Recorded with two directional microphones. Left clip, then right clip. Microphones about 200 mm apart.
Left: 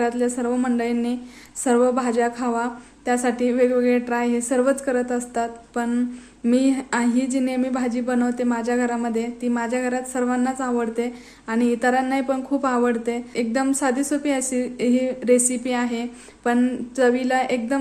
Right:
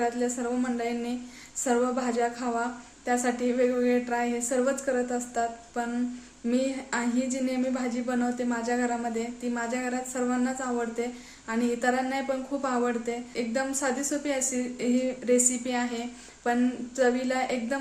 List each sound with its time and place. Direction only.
0.0 s speech: 35° left (ahead or behind)